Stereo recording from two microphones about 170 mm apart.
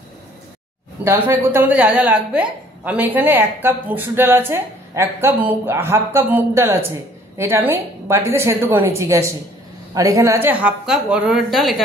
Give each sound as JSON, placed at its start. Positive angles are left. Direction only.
{"t": 1.0, "sound": "a woman's voice", "side_deg": -10}